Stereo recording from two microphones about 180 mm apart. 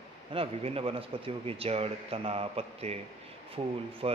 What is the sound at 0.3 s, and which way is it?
A man's voice, 30° right (ahead or behind).